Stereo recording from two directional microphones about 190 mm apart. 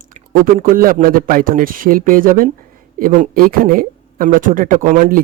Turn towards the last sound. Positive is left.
turn(degrees=-45)  # may be behind; listen again after turning